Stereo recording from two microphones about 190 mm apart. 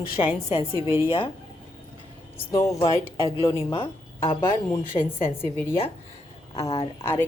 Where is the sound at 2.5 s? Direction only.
15° left (ahead or behind).